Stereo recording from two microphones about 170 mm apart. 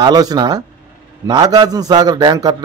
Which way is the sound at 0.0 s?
25° right (ahead or behind).